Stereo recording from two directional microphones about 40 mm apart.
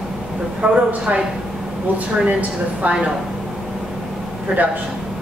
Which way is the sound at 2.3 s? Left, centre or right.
Right.